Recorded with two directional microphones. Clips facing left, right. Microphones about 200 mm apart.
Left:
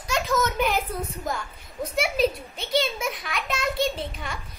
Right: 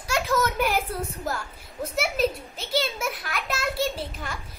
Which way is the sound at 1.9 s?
Centre (ahead or behind).